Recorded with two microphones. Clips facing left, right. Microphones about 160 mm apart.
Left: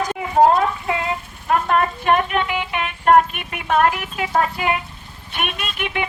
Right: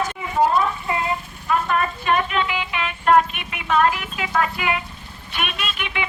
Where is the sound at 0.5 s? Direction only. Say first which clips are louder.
Left 2 dB; 80° left.